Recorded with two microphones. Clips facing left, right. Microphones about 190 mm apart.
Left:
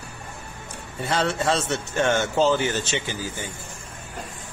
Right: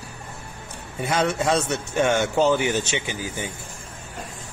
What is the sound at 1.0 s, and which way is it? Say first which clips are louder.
Speech: right 1 dB; 10° right (ahead or behind).